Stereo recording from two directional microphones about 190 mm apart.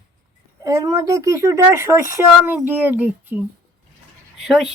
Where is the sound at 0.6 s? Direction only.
15° right (ahead or behind).